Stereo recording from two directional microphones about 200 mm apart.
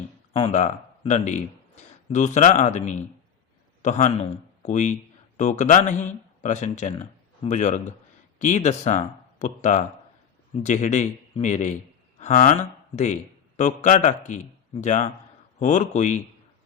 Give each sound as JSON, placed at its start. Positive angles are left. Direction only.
{"t": 0.3, "sound": "a man's voice", "side_deg": 35}
{"t": 13.6, "sound": "a man's voice", "side_deg": 35}